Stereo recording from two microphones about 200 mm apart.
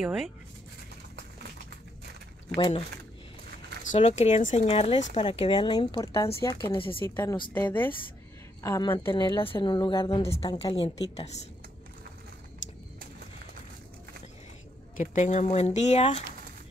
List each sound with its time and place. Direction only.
0.0 s speech: centre (ahead or behind)
3.9 s a woman's voice: 35° left (ahead or behind)
7.0 s a woman's voice: 10° left (ahead or behind); by 11.4 s 35° left (ahead or behind)
15.0 s speech: 35° left (ahead or behind)